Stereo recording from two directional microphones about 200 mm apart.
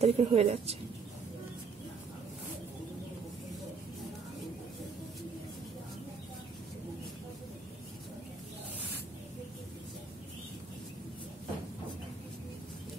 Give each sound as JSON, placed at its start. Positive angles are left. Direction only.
{"t": 0.0, "sound": "speech", "side_deg": -30}